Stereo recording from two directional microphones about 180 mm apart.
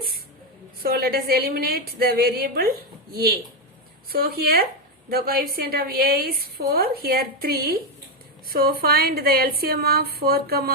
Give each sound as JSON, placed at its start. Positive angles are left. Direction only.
{"t": 0.8, "sound": "a woman's voice", "side_deg": -55}